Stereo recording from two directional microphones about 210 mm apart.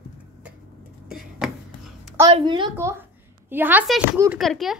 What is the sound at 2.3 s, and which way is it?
A woman's voice, 20° right (ahead or behind).